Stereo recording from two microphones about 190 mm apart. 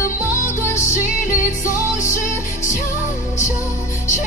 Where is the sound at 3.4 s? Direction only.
15° left (ahead or behind).